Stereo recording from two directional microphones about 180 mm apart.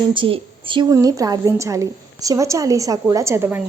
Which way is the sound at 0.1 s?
30° right (ahead or behind).